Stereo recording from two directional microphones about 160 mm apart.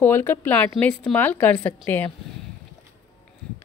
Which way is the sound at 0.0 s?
15° left (ahead or behind).